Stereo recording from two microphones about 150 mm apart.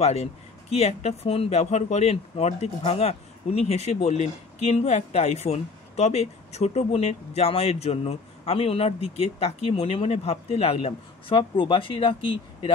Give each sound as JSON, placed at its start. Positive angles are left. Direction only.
{"t": 0.0, "sound": "speech", "side_deg": 45}